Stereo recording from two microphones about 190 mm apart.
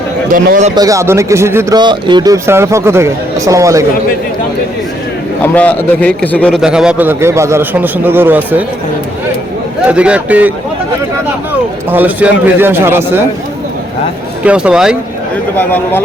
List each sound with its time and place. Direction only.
0.3 s a man's voice: 45° right (ahead or behind)
0.8 s a man's voice: 15° right (ahead or behind)
5.4 s a man's voice: 10° left (ahead or behind); by 8.6 s 10° right (ahead or behind)
9.8 s a man's voice: 5° right (ahead or behind)
11.9 s a man's voice: 10° right (ahead or behind)
14.4 s speech: 5° right (ahead or behind)
15.5 s a man's voice: 10° left (ahead or behind)